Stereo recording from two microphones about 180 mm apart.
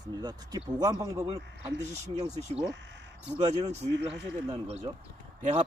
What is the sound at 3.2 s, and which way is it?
Speech, 40° right (ahead or behind).